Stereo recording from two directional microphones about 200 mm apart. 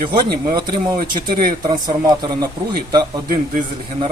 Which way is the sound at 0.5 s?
20° right (ahead or behind).